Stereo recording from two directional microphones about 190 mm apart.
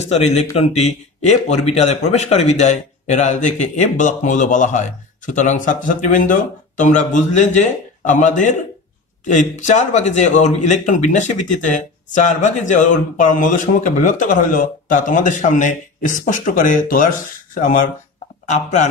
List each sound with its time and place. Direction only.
0.0 s a man's voice: 35° left (ahead or behind)